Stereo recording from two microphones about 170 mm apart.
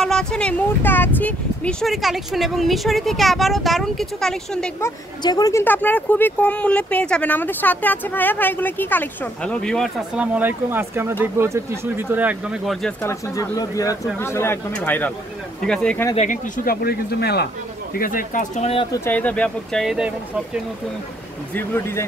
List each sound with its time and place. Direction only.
0.0 s speech: 5° left (ahead or behind)
4.7 s speech: 20° left (ahead or behind); by 12.7 s 5° right (ahead or behind)
13.0 s speech: 20° left (ahead or behind)
16.2 s speech: 50° left (ahead or behind); by 17.5 s 70° left (ahead or behind)
17.9 s speech: 55° left (ahead or behind); by 18.9 s 40° left (ahead or behind)
18.9 s speech: 15° left (ahead or behind); by 20.6 s 5° right (ahead or behind)
21.5 s speech: 15° left (ahead or behind)